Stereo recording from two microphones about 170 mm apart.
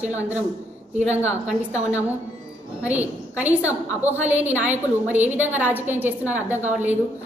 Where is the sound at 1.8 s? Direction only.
10° right (ahead or behind).